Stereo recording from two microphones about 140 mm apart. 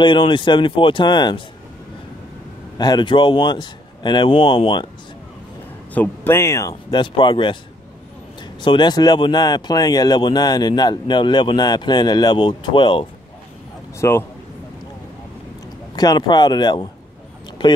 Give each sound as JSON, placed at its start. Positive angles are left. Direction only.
{"t": 0.0, "sound": "speech", "side_deg": 35}
{"t": 2.8, "sound": "speech", "side_deg": 30}
{"t": 5.9, "sound": "a man's voice", "side_deg": 15}
{"t": 6.9, "sound": "speech", "side_deg": 35}
{"t": 8.5, "sound": "speech", "side_deg": 35}
{"t": 13.9, "sound": "a man's voice", "side_deg": 20}
{"t": 16.0, "sound": "speech", "side_deg": 30}